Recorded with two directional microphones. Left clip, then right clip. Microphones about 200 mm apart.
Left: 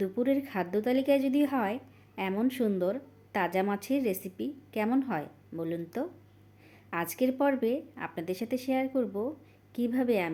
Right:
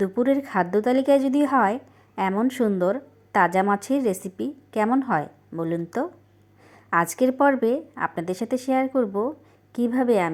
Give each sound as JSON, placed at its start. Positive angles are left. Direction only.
{"t": 0.0, "sound": "a woman's voice", "side_deg": -20}